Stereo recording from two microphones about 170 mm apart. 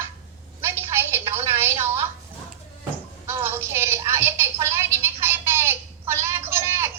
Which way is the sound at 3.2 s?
15° right (ahead or behind).